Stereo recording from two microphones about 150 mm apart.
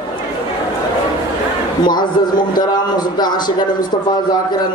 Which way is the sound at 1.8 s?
30° left (ahead or behind).